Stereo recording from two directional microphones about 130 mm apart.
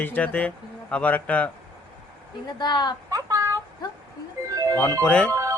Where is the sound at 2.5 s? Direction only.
35° left (ahead or behind).